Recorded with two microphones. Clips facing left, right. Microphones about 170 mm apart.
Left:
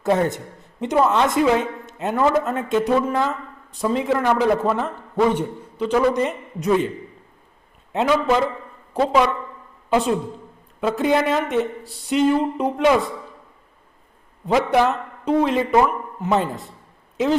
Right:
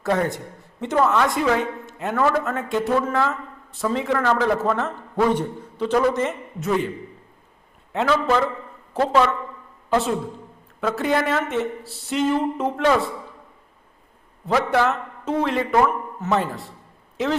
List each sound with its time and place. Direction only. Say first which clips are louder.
0.0 s a woman's voice: left 3 dB; 20° left (ahead or behind)
7.9 s a man's voice: left 2 dB; 15° left (ahead or behind)
14.4 s a man's voice: left 2 dB; 15° left (ahead or behind)